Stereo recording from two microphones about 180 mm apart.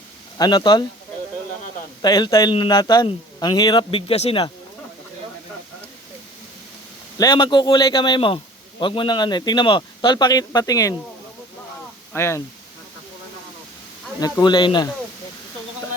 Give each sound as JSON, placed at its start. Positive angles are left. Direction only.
{"t": 0.3, "sound": "speech", "side_deg": 25}
{"t": 2.0, "sound": "speech", "side_deg": 25}
{"t": 7.2, "sound": "speech", "side_deg": 25}
{"t": 12.1, "sound": "speech", "side_deg": 15}
{"t": 14.2, "sound": "speech", "side_deg": 20}